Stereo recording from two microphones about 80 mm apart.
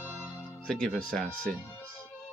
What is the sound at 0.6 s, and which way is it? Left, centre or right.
Speech, centre.